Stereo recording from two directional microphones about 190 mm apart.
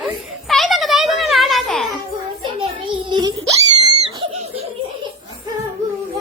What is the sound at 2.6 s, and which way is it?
Screaming, 25° right (ahead or behind).